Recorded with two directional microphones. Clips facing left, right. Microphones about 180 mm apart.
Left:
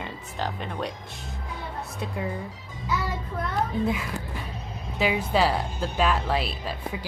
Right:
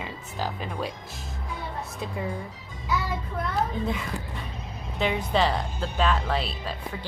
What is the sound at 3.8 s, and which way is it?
A woman's voice, 5° left (ahead or behind).